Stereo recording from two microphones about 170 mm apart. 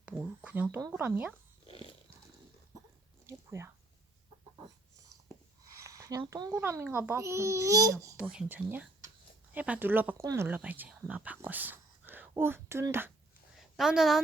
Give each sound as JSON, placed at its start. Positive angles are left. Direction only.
{"t": 0.0, "sound": "a sound", "side_deg": -10}
{"t": 0.8, "sound": "speech", "side_deg": -20}
{"t": 1.0, "sound": "a child's voice", "side_deg": -10}
{"t": 1.6, "sound": "dog", "side_deg": 30}
{"t": 3.2, "sound": "a sound", "side_deg": -15}
{"t": 5.8, "sound": "a child's voice", "side_deg": -20}
{"t": 8.1, "sound": "a child's voice", "side_deg": -5}
{"t": 13.6, "sound": "a woman's voice", "side_deg": 0}